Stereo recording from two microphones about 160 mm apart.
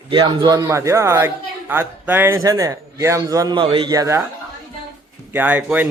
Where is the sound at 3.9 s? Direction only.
20° right (ahead or behind).